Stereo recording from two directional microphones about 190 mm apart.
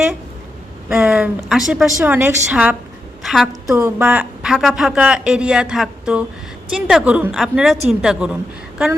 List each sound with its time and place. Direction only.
0.9 s a woman's voice: 5° right (ahead or behind)
3.8 s a woman's voice: 10° right (ahead or behind)